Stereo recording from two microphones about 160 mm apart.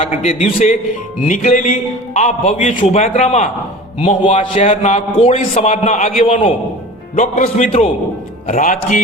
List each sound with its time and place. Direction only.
0.2 s a man's voice: 45° left (ahead or behind)
7.7 s a man's voice: 35° left (ahead or behind)
8.4 s a man's voice: 55° left (ahead or behind)